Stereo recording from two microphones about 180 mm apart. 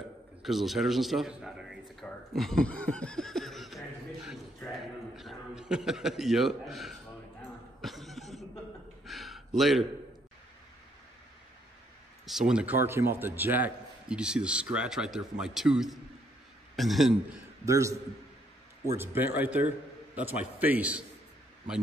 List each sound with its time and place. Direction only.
0.4 s a man's voice: centre (ahead or behind)
7.8 s a sound: centre (ahead or behind)
9.6 s a man's voice: centre (ahead or behind)
12.3 s a man's voice: 5° right (ahead or behind)
17.6 s a man's voice: 15° right (ahead or behind)